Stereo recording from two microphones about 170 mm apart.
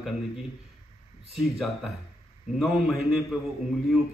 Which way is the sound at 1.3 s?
Centre (ahead or behind).